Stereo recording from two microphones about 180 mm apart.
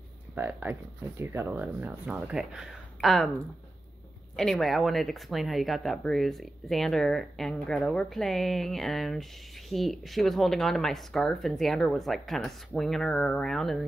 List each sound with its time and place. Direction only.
0.4 s speech: 10° right (ahead or behind)